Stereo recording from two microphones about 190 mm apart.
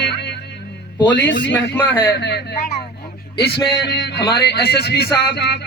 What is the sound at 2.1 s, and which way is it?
Music, 60° left (ahead or behind).